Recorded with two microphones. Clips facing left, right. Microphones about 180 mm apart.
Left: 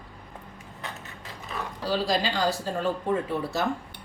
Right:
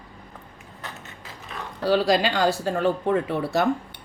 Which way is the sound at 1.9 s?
70° right (ahead or behind).